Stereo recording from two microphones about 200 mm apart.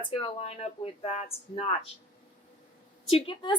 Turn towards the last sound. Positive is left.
turn(degrees=25)  # may be behind; listen again after turning